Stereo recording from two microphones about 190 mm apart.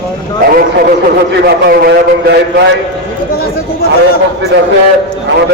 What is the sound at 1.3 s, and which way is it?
A man's voice, 60° right (ahead or behind).